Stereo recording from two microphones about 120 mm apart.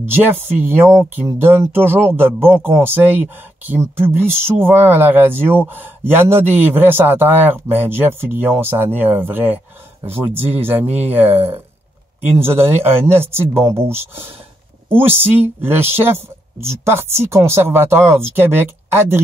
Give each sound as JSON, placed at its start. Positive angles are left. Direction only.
{"t": 0.0, "sound": "speech", "side_deg": -15}